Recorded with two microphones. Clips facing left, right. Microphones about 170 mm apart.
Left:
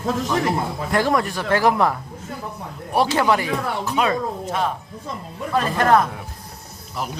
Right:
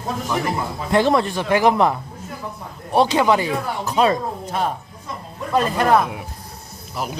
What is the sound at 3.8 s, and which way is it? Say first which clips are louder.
Speech: right 5 dB; 35° right (ahead or behind).